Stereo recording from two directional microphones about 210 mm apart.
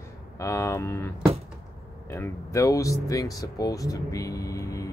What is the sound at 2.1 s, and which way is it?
Speech, 15° left (ahead or behind).